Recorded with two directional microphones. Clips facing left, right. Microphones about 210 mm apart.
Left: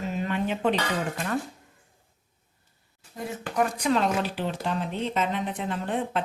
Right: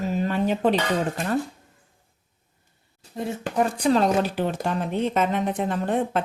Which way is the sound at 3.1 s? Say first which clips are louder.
Right 3 dB; 25° right (ahead or behind).